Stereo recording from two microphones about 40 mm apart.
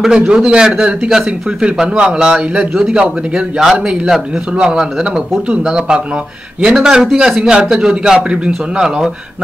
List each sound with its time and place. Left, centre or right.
0.0 s a man's voice: right